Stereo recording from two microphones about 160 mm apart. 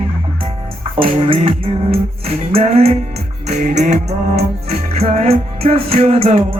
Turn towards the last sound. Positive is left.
turn(degrees=-35)  # may be behind; listen again after turning